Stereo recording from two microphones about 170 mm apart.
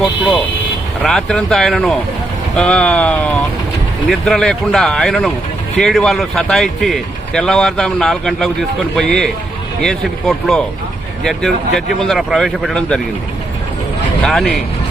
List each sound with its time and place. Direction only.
1.0 s speech: centre (ahead or behind)
14.2 s speech: 5° left (ahead or behind)